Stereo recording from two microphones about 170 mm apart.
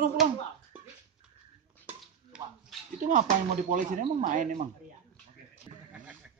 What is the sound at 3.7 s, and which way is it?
Speech, 45° right (ahead or behind).